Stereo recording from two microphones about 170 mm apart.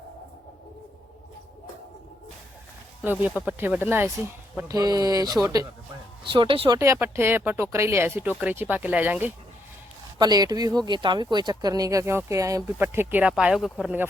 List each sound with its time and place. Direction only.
3.0 s speech: 10° right (ahead or behind)
4.7 s a woman's voice: 20° right (ahead or behind)
6.7 s speech: 15° right (ahead or behind)
10.2 s speech: 25° right (ahead or behind); by 14.1 s 10° right (ahead or behind)